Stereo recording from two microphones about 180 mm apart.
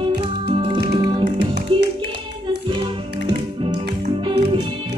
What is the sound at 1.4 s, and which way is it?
Music, 65° right (ahead or behind).